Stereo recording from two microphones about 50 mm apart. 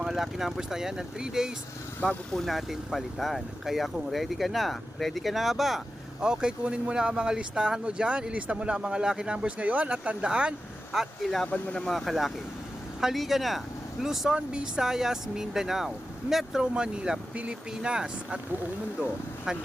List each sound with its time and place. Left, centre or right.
0.0 s speech: centre
2.0 s speech: centre
6.1 s speech: centre
11.5 s speech: left
11.9 s speech: centre
16.6 s speech: centre
19.5 s speech: centre